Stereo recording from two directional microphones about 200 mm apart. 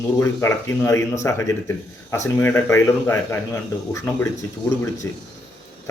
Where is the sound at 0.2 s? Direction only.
10° left (ahead or behind).